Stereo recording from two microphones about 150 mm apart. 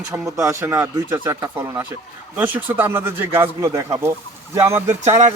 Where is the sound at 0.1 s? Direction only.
20° right (ahead or behind).